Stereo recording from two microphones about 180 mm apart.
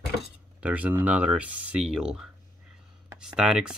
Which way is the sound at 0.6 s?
10° right (ahead or behind).